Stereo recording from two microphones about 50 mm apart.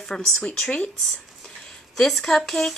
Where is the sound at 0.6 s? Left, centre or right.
Left.